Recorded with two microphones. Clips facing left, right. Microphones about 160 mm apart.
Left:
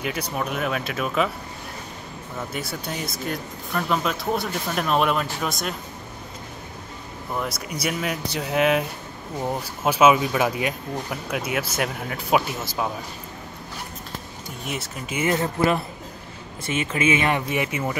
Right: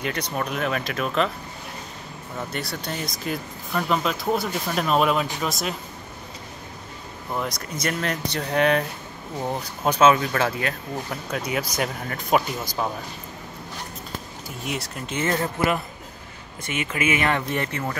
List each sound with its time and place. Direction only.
0.0 s speech: 5° left (ahead or behind)
2.7 s speech: centre (ahead or behind)
7.3 s speech: 5° left (ahead or behind)
14.6 s speech: centre (ahead or behind)
16.6 s speech: 30° left (ahead or behind)
17.5 s speech: 10° left (ahead or behind)